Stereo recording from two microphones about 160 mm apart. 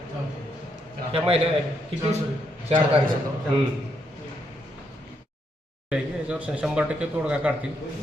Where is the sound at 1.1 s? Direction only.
40° right (ahead or behind).